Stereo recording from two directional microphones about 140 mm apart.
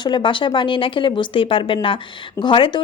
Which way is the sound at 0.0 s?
35° left (ahead or behind).